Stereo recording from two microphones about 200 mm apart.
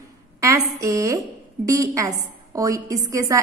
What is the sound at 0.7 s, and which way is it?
A woman's voice, 15° right (ahead or behind).